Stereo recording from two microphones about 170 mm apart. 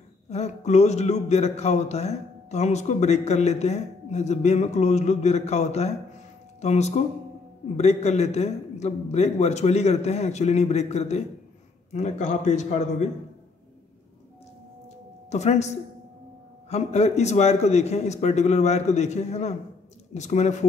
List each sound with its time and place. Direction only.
0.3 s a man's voice: 40° left (ahead or behind)
15.2 s a man's voice: 40° left (ahead or behind)